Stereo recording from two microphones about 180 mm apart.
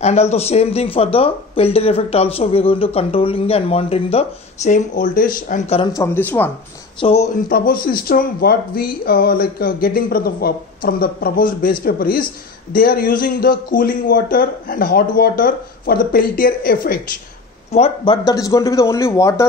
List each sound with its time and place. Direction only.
0.0 s speech: 35° left (ahead or behind)
5.9 s speech: 10° left (ahead or behind)
7.0 s speech: 35° left (ahead or behind)
7.4 s a man's voice: 55° left (ahead or behind)
17.7 s speech: 30° left (ahead or behind)